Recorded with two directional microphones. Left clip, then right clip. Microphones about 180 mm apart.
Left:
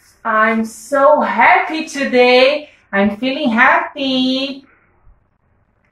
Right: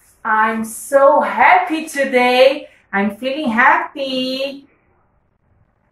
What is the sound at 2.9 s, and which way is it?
Speech, 30° right (ahead or behind).